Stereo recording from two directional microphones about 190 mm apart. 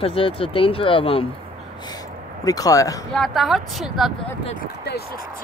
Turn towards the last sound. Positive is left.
turn(degrees=55)  # may be behind; listen again after turning